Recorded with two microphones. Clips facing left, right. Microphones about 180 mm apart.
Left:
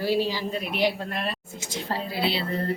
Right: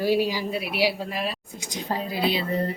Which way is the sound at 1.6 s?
15° right (ahead or behind).